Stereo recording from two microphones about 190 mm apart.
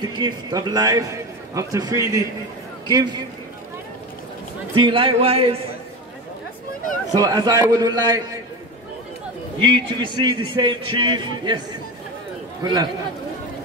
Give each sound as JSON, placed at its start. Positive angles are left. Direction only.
{"t": 0.0, "sound": "a man's voice", "side_deg": -20}
{"t": 4.7, "sound": "a man's voice", "side_deg": -25}
{"t": 7.1, "sound": "a man's voice", "side_deg": -20}
{"t": 9.6, "sound": "a man's voice", "side_deg": -25}